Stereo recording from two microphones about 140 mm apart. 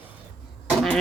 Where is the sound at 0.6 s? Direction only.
Centre (ahead or behind).